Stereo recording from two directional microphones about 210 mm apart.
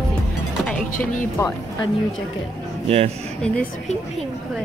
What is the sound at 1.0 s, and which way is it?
Speech, 15° left (ahead or behind).